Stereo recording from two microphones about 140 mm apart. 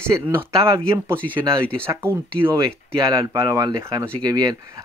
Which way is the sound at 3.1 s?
25° right (ahead or behind).